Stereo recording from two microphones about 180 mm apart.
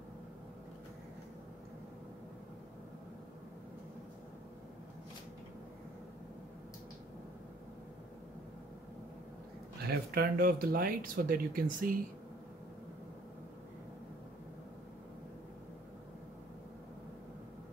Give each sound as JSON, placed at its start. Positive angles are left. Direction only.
{"t": 9.8, "sound": "speech", "side_deg": -55}